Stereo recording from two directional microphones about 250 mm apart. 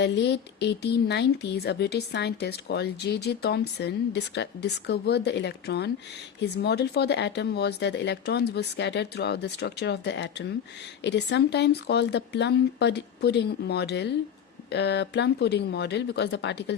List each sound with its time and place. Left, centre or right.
0.0 s speech: left